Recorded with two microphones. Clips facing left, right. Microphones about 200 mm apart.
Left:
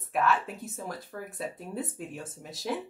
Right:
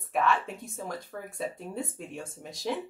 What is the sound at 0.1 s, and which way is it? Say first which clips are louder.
Speech: even; centre (ahead or behind).